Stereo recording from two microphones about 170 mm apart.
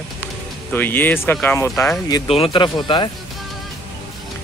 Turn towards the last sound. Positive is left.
turn(degrees=25)  # may be behind; listen again after turning